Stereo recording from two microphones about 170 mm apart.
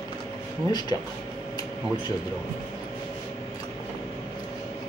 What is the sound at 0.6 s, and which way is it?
Speech, 25° left (ahead or behind).